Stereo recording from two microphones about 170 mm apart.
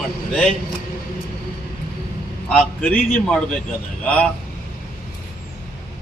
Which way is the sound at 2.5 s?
Centre (ahead or behind).